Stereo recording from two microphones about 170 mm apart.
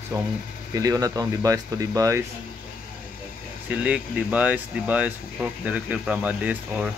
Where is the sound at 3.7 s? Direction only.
10° right (ahead or behind).